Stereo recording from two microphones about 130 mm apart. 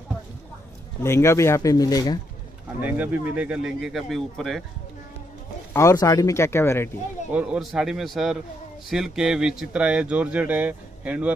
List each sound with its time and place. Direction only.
1.0 s speech: 20° left (ahead or behind)
2.8 s speech: 10° right (ahead or behind)
5.7 s speech: 25° left (ahead or behind)
7.2 s speech: 10° right (ahead or behind)